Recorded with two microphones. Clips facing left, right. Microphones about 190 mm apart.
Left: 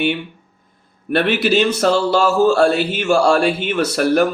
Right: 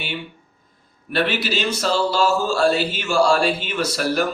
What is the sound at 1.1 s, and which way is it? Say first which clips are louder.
Speech: left 6 dB; 55° left (ahead or behind).